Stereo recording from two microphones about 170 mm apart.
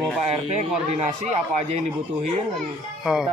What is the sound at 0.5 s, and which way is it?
Speech, 40° right (ahead or behind).